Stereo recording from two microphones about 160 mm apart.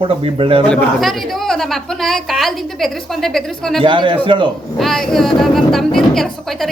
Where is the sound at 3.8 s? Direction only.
30° right (ahead or behind).